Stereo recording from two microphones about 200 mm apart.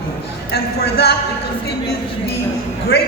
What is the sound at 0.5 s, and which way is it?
Speech, 55° left (ahead or behind).